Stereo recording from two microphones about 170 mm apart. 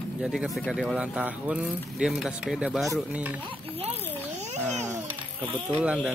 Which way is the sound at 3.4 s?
35° right (ahead or behind).